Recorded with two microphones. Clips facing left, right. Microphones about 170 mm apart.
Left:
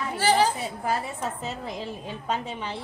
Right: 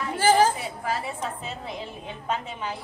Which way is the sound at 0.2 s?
50° right (ahead or behind).